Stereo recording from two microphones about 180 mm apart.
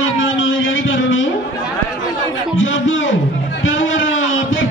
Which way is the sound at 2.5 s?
90° left.